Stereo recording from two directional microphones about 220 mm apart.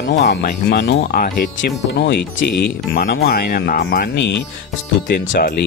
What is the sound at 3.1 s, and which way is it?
Speech, 50° left (ahead or behind).